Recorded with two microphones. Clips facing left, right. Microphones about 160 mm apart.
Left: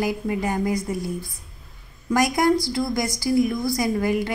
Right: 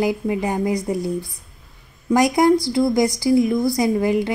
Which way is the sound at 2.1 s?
15° right (ahead or behind).